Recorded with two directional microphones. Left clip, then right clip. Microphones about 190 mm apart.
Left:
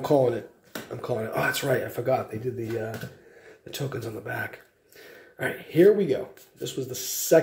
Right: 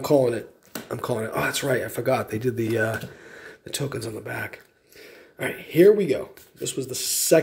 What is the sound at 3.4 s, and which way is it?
Speech, 30° right (ahead or behind).